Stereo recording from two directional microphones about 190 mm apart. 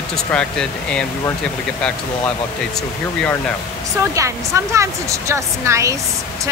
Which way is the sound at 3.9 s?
15° right (ahead or behind).